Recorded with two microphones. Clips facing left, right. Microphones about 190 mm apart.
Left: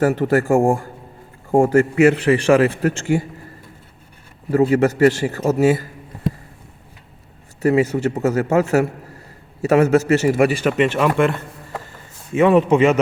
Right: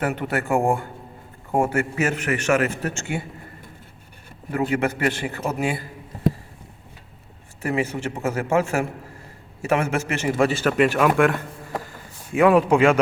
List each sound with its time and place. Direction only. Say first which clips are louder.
0.0 s a man's voice: left 8 dB; 35° left (ahead or behind)
4.5 s a man's voice: left 8 dB; 35° left (ahead or behind)
7.6 s a man's voice: left 8 dB; 40° left (ahead or behind)
10.6 s speech: left 1 dB; 5° left (ahead or behind)
12.4 s speech: left 2 dB; centre (ahead or behind)